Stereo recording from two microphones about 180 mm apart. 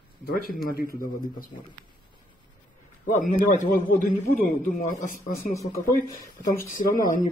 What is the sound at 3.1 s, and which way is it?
A man's voice, 45° left (ahead or behind).